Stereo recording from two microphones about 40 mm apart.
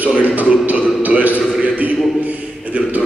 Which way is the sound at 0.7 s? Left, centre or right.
Right.